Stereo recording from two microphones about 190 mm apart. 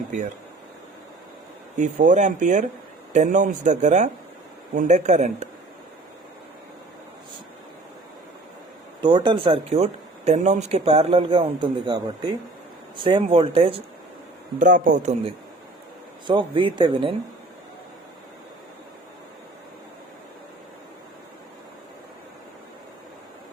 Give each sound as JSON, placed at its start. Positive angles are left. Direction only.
{"t": 1.7, "sound": "speech", "side_deg": -40}
{"t": 9.0, "sound": "speech", "side_deg": -25}
{"t": 14.6, "sound": "a man's voice", "side_deg": -45}
{"t": 16.2, "sound": "speech", "side_deg": -25}